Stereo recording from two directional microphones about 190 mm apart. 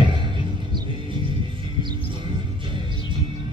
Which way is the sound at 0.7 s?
25° right (ahead or behind).